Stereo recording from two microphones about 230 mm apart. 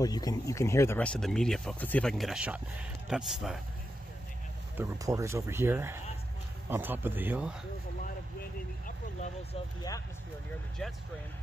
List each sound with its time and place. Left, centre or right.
0.0 s speech: centre
4.7 s speech: centre
8.4 s vehicle: left
10.8 s speech: centre